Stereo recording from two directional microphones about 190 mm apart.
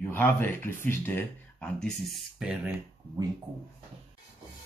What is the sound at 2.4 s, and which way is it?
Speech, 5° right (ahead or behind).